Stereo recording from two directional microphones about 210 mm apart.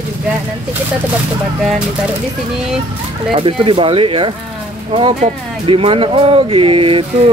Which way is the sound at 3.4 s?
25° right (ahead or behind).